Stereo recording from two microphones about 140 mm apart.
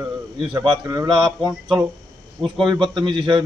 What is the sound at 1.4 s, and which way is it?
Speech, 5° right (ahead or behind).